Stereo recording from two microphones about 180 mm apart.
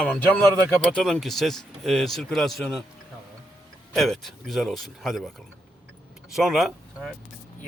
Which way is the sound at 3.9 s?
Centre (ahead or behind).